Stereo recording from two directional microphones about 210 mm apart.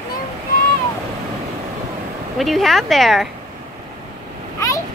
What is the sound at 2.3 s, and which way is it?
Speech, centre (ahead or behind).